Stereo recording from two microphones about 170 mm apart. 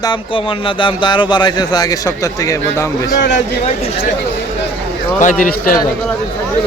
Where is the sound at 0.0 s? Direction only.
25° left (ahead or behind).